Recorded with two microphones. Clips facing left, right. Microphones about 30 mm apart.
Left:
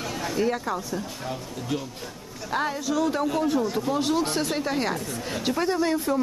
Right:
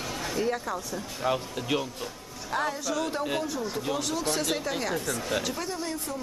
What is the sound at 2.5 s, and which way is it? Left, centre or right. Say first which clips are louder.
Speech: left 2 dB; left.